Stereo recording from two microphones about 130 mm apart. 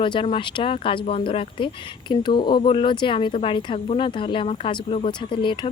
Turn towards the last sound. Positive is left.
turn(degrees=40)  # may be behind; listen again after turning